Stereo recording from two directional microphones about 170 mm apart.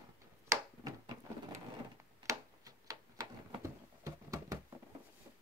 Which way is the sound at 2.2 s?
20° right (ahead or behind).